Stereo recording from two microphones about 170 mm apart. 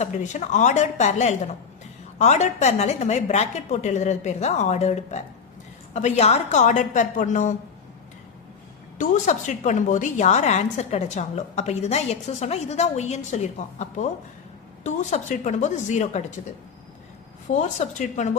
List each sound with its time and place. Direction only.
0.0 s a woman's voice: 45° left (ahead or behind)
9.0 s a woman's voice: 45° left (ahead or behind)
17.5 s a woman's voice: 45° left (ahead or behind)